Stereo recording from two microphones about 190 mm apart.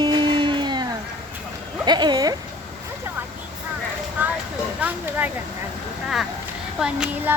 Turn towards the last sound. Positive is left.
turn(degrees=-5)  # may be behind; listen again after turning